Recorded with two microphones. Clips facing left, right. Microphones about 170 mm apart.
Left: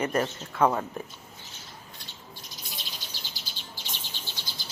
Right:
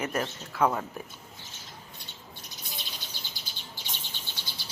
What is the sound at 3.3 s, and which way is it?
Bird, 55° right (ahead or behind).